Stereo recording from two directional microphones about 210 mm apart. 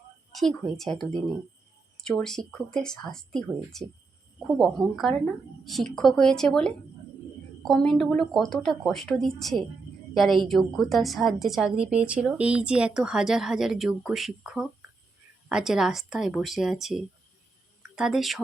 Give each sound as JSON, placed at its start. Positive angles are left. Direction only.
{"t": 0.3, "sound": "a woman's voice", "side_deg": 0}